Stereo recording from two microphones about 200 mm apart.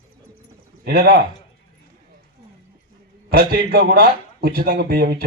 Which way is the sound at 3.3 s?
50° right (ahead or behind).